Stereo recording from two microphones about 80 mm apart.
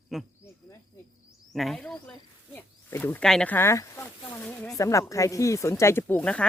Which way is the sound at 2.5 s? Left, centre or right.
Left.